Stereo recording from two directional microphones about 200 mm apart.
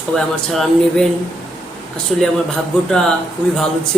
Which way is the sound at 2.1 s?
Centre (ahead or behind).